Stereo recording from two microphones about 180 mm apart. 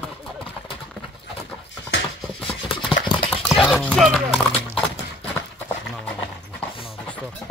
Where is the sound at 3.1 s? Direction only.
25° left (ahead or behind).